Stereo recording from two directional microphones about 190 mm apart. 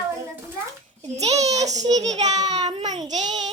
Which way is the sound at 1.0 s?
35° right (ahead or behind).